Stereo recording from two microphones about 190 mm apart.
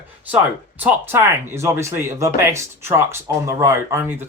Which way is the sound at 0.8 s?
10° right (ahead or behind).